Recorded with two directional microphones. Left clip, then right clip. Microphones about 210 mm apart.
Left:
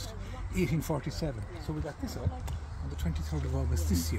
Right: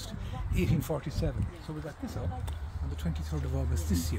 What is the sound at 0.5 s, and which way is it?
Speech, 20° right (ahead or behind).